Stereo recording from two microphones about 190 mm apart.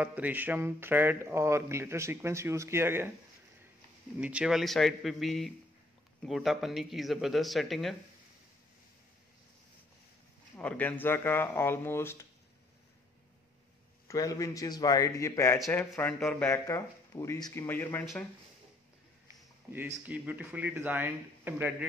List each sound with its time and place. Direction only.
0.0 s speech: 10° right (ahead or behind)
4.2 s speech: 5° right (ahead or behind)
10.5 s speech: 5° left (ahead or behind)
14.0 s speech: 20° left (ahead or behind)
20.1 s speech: 10° right (ahead or behind)